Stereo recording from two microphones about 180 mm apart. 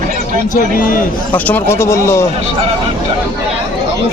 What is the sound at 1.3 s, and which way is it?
Speech, 10° left (ahead or behind).